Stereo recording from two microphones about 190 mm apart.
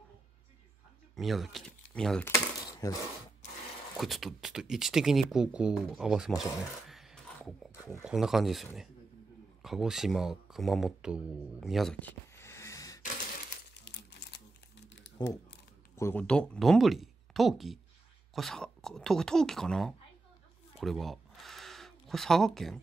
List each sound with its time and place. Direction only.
1.1 s speech: centre (ahead or behind); by 3.0 s 15° left (ahead or behind)
3.9 s speech: centre (ahead or behind)
6.9 s a sound: centre (ahead or behind)
7.7 s wild animals: 15° left (ahead or behind)
8.0 s speech: centre (ahead or behind); by 13.0 s 20° left (ahead or behind)
13.9 s a sound: 65° left (ahead or behind)
14.9 s crumpling: 70° left (ahead or behind)
16.0 s speech: 10° left (ahead or behind)
20.8 s a sound: centre (ahead or behind)